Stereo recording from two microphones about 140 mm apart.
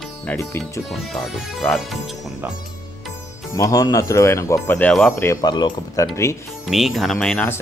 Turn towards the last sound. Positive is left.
turn(degrees=5)  # may be behind; listen again after turning